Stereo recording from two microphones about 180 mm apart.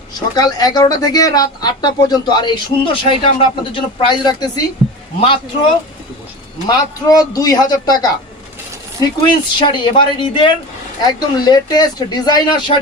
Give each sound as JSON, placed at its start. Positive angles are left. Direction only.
{"t": 0.1, "sound": "a woman's voice", "side_deg": 20}
{"t": 6.7, "sound": "a woman's voice", "side_deg": 20}
{"t": 9.0, "sound": "a woman's voice", "side_deg": 25}